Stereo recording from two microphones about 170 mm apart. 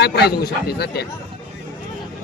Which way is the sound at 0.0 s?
70° left (ahead or behind).